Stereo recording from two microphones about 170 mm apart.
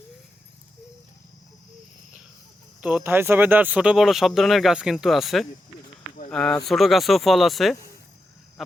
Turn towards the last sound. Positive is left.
turn(degrees=0)  # may be behind; listen again after turning